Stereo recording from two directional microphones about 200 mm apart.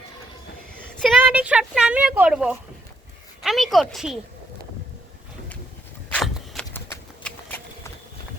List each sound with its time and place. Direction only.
1.2 s speech: 5° right (ahead or behind)
6.1 s a sound: 5° left (ahead or behind)
6.7 s clip-clop: 10° left (ahead or behind)